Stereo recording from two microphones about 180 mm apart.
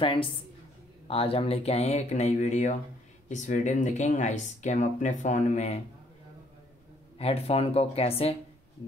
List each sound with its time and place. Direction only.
0.0 s a woman's voice: 30° left (ahead or behind)
7.2 s speech: 35° left (ahead or behind)